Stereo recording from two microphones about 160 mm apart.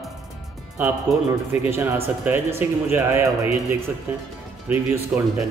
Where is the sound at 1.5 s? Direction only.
15° right (ahead or behind).